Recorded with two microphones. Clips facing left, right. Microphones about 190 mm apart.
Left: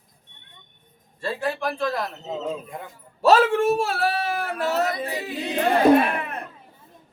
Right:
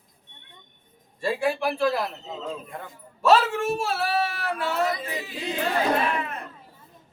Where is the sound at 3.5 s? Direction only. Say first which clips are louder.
Left 5 dB; 60° left (ahead or behind).